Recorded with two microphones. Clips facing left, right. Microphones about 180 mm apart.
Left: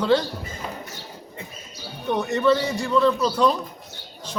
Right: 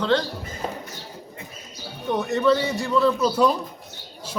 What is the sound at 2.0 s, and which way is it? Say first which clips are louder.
A man's voice: even; centre (ahead or behind).